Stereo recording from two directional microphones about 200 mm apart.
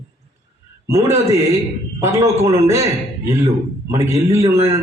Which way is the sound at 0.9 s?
15° right (ahead or behind).